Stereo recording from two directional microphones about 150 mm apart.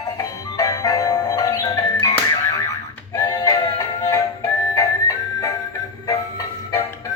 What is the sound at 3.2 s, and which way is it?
Music, 20° left (ahead or behind).